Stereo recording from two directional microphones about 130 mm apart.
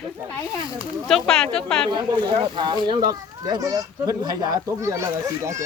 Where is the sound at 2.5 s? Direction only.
35° right (ahead or behind).